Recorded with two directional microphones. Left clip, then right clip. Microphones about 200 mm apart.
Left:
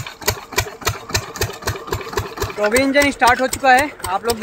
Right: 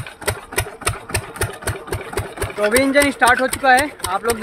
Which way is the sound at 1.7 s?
10° right (ahead or behind).